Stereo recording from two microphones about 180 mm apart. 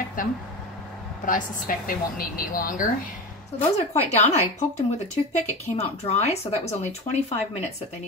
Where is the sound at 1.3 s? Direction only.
50° left (ahead or behind).